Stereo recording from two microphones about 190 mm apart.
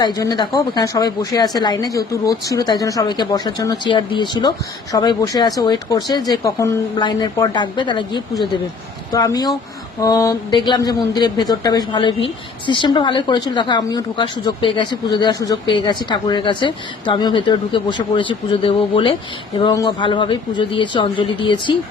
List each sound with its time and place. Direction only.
0.0 s speech: 20° left (ahead or behind)